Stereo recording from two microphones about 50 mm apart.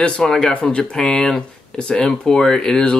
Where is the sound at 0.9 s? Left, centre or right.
Centre.